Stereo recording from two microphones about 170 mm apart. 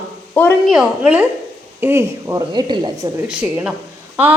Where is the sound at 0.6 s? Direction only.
5° right (ahead or behind); by 3.1 s 25° right (ahead or behind).